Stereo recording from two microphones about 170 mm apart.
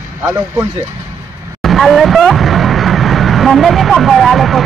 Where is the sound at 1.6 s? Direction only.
Centre (ahead or behind).